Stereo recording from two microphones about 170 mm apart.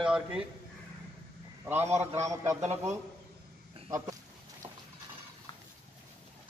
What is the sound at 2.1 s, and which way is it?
Speech, 15° right (ahead or behind).